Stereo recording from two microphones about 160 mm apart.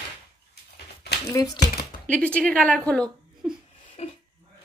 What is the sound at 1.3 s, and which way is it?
Speech, 25° left (ahead or behind).